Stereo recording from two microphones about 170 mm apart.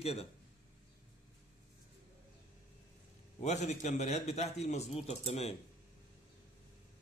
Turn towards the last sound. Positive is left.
turn(degrees=40)  # may be behind; listen again after turning